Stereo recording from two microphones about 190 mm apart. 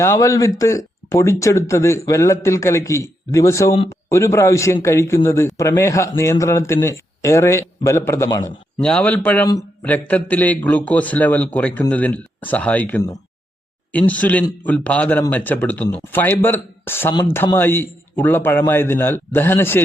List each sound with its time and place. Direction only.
0.0 s a man's voice: 15° left (ahead or behind)
8.8 s a man's voice: 5° left (ahead or behind)